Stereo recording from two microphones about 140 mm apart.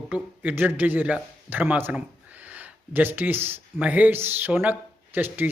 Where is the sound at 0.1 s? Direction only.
10° right (ahead or behind).